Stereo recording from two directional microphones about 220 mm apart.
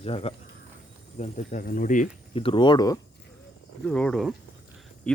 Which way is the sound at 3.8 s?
5° left (ahead or behind).